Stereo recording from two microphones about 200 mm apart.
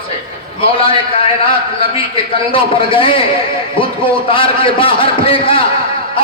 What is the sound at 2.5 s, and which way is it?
Speech, 25° left (ahead or behind).